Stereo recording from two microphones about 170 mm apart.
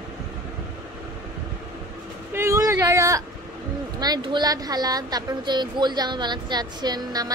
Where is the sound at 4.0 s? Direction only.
25° right (ahead or behind).